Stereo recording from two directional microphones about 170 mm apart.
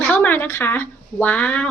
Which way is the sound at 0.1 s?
10° left (ahead or behind).